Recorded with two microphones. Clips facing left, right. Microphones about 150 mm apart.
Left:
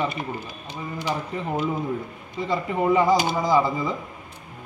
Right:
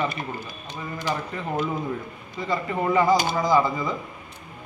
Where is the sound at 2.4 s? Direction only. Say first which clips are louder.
Left 2 dB; 25° left (ahead or behind).